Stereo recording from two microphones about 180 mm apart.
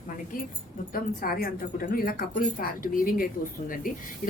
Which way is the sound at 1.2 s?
55° left (ahead or behind).